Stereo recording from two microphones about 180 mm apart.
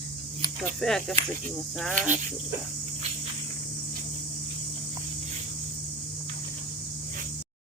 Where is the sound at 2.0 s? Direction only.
45° right (ahead or behind).